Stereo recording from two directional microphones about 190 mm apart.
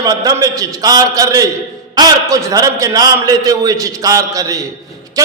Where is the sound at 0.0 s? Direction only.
20° right (ahead or behind).